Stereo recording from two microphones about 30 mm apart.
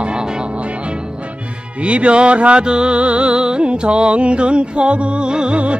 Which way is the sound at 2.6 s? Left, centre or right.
Right.